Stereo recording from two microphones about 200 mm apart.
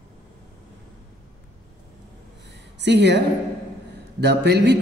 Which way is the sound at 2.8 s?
60° right (ahead or behind).